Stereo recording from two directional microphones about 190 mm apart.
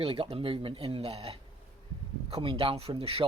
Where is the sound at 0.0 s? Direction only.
30° right (ahead or behind).